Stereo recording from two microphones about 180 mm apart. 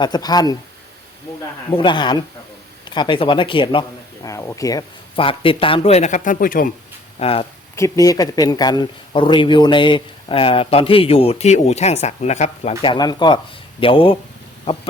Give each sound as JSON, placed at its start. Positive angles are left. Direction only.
{"t": 0.0, "sound": "speech", "side_deg": 20}
{"t": 1.7, "sound": "speech", "side_deg": 25}
{"t": 7.2, "sound": "speech", "side_deg": 30}
{"t": 7.8, "sound": "speech", "side_deg": 20}